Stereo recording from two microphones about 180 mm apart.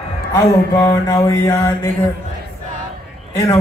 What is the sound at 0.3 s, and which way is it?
Mantra, 15° left (ahead or behind).